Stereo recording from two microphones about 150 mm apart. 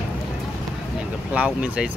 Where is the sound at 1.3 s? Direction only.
10° right (ahead or behind).